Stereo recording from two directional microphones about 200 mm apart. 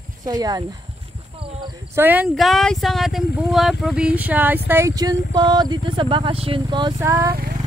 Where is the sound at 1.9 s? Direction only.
10° right (ahead or behind).